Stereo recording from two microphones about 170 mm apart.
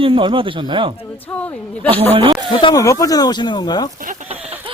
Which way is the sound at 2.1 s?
30° right (ahead or behind).